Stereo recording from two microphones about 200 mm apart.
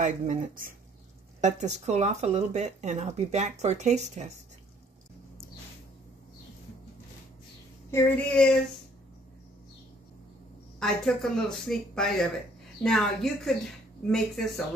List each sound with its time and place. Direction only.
0.0 s speech: 40° right (ahead or behind)
7.9 s a child's voice: 5° left (ahead or behind)
10.8 s a woman's voice: centre (ahead or behind)